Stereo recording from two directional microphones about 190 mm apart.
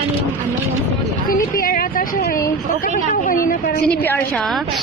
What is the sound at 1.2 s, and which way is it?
Speech, 50° left (ahead or behind).